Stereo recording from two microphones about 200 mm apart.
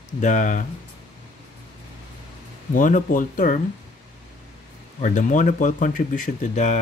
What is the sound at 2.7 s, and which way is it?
Speech, 40° left (ahead or behind).